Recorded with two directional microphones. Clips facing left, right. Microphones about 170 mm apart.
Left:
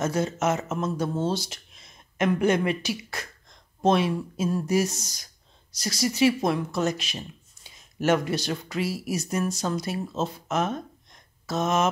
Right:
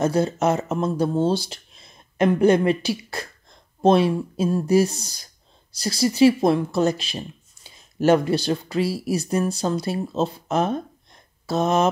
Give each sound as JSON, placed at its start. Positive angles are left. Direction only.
{"t": 0.0, "sound": "speech", "side_deg": -35}